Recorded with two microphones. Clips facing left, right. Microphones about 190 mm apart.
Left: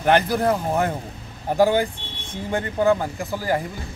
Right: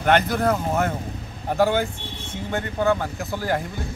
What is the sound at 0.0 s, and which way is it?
Speech, 10° left (ahead or behind).